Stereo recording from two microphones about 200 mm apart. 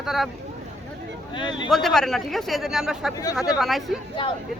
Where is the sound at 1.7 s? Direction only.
Centre (ahead or behind).